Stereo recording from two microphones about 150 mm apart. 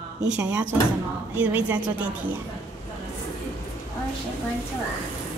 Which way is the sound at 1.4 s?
10° right (ahead or behind).